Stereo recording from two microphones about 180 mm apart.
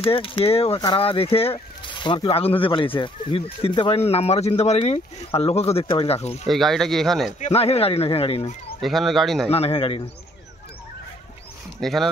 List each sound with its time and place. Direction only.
0.0 s speech: 30° left (ahead or behind)
6.4 s speech: centre (ahead or behind)
7.3 s speech: 35° left (ahead or behind)
8.8 s speech: centre (ahead or behind)
9.5 s speech: 35° left (ahead or behind)
11.8 s speech: centre (ahead or behind)